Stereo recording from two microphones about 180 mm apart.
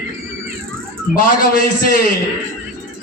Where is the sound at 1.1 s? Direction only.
55° left (ahead or behind).